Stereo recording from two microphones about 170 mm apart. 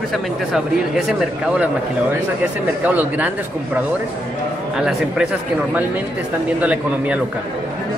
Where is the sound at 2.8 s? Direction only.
10° right (ahead or behind).